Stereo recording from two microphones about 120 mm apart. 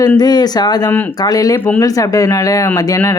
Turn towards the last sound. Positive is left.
turn(degrees=30)  # may be behind; listen again after turning